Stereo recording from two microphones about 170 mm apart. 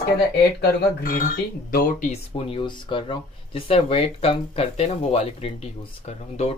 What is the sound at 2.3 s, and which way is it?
Speech, 30° left (ahead or behind).